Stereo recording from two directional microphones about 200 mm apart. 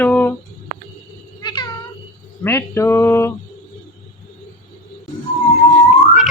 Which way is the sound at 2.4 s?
10° left (ahead or behind).